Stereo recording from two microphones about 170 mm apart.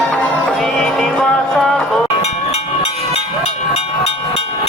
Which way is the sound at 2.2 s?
35° left (ahead or behind).